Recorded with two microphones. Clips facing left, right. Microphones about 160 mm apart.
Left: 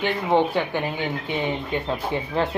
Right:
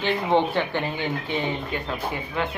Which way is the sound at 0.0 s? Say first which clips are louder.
Left 1 dB; 10° left (ahead or behind).